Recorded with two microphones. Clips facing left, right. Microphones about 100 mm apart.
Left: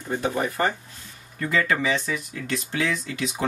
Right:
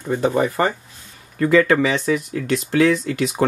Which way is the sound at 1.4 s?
65° right (ahead or behind).